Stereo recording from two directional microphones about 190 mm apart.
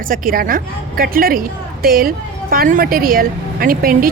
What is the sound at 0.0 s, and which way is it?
A woman's voice, 45° right (ahead or behind).